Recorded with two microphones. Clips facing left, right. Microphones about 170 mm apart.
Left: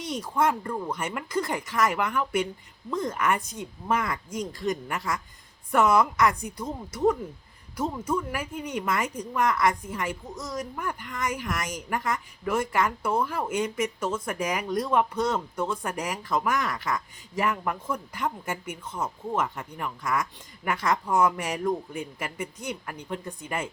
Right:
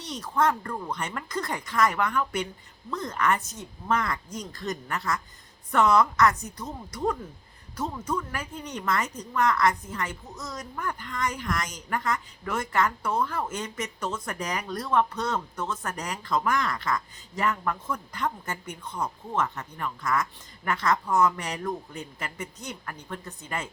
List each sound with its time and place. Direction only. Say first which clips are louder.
0.0 s speech: even; 10° left (ahead or behind)